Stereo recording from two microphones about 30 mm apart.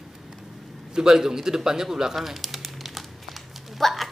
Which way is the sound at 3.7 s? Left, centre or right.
Centre.